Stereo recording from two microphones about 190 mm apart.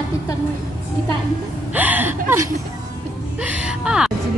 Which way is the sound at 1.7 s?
10° right (ahead or behind).